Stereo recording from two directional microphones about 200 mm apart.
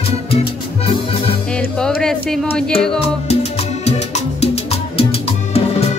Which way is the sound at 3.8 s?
30° left (ahead or behind).